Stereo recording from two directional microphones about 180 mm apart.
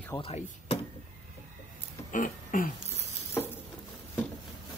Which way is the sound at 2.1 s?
50° left (ahead or behind).